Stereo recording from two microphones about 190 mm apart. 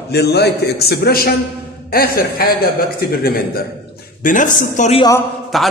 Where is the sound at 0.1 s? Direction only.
60° left (ahead or behind); by 5.0 s 40° left (ahead or behind).